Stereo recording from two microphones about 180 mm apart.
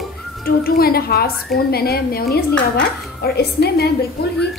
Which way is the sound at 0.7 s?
55° left (ahead or behind).